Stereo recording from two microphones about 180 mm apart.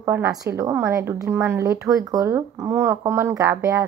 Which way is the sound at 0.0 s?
15° right (ahead or behind).